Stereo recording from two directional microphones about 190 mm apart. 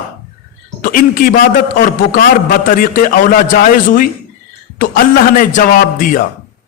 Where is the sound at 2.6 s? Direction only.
45° left (ahead or behind).